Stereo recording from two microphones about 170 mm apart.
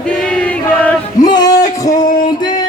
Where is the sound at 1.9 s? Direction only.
50° left (ahead or behind).